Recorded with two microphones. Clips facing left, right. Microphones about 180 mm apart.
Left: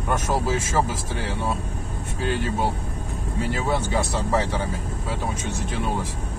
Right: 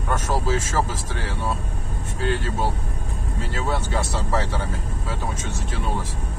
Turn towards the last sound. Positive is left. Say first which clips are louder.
# left 2 dB
turn(degrees=15)  # may be behind; listen again after turning